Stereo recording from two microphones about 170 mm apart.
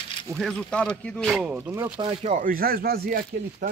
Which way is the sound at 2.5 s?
60° right (ahead or behind).